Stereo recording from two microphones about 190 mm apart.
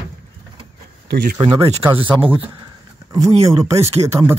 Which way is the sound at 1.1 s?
50° right (ahead or behind).